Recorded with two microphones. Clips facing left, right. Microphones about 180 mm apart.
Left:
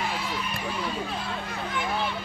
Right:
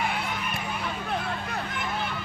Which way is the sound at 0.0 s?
60° right (ahead or behind).